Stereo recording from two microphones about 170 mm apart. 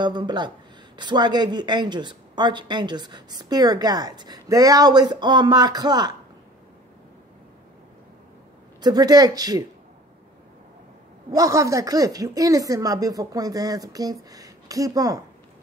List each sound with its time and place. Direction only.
0.0 s a woman's voice: 25° right (ahead or behind)
8.8 s a woman's voice: 25° right (ahead or behind)
11.3 s a woman's voice: 20° right (ahead or behind)